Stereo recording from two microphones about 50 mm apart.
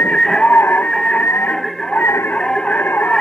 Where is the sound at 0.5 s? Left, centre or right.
Left.